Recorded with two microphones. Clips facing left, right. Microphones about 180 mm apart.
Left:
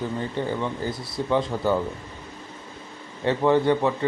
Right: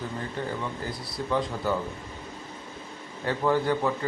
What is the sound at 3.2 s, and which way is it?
Speech, 25° left (ahead or behind).